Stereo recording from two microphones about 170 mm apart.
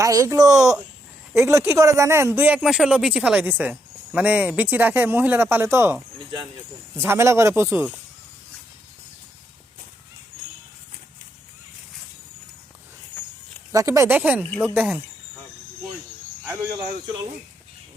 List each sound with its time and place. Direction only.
0.0 s speech: 20° right (ahead or behind)
13.7 s speech: 20° right (ahead or behind); by 15.0 s centre (ahead or behind)
16.4 s speech: 15° right (ahead or behind)